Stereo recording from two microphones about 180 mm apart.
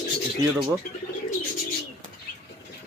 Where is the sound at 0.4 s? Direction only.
20° right (ahead or behind).